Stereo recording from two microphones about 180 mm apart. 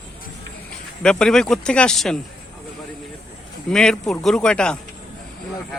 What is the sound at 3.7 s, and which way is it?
Speech, 5° left (ahead or behind).